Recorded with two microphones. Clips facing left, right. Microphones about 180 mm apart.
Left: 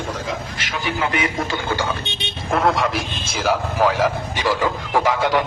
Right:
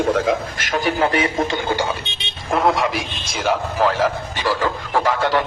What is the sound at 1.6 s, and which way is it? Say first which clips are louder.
Speech: right 2 dB; 15° right (ahead or behind).